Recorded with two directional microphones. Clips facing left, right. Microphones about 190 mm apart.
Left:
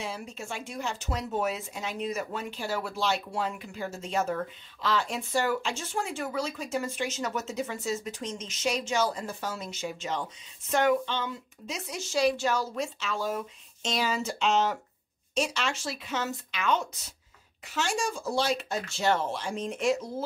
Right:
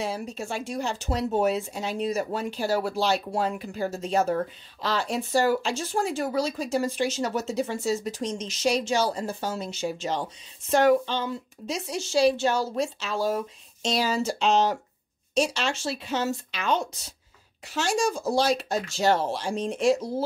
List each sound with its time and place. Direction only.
0.0 s speech: 40° right (ahead or behind)